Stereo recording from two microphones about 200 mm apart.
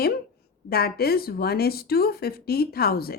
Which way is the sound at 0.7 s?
50° left (ahead or behind).